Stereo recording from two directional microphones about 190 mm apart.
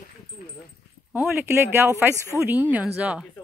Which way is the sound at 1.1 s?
10° right (ahead or behind).